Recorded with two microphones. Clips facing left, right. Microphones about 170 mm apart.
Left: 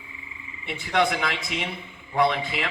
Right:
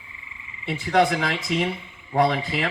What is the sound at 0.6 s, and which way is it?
Speech, 35° right (ahead or behind).